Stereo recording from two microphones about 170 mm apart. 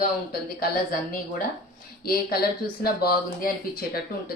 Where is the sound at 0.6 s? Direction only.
55° left (ahead or behind).